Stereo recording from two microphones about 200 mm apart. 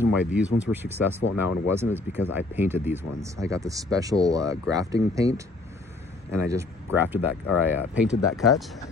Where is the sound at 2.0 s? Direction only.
10° right (ahead or behind).